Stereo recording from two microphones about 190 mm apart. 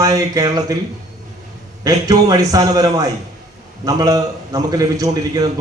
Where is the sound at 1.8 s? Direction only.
20° right (ahead or behind).